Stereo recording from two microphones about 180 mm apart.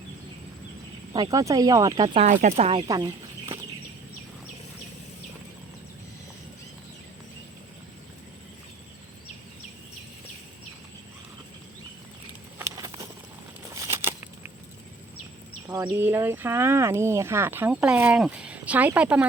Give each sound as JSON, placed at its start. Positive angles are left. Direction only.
{"t": 1.1, "sound": "speech", "side_deg": -20}
{"t": 2.1, "sound": "speech", "side_deg": -40}
{"t": 2.8, "sound": "speech", "side_deg": -20}
{"t": 12.5, "sound": "a sound", "side_deg": -15}
{"t": 15.8, "sound": "speech", "side_deg": -10}